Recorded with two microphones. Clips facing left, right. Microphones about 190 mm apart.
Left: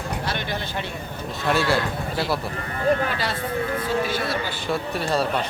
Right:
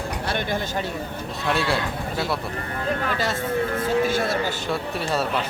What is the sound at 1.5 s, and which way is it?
Speech, centre (ahead or behind).